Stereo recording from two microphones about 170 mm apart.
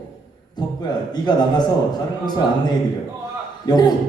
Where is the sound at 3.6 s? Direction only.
25° left (ahead or behind).